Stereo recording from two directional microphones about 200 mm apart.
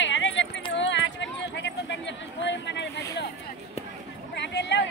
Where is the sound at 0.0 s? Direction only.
65° left (ahead or behind).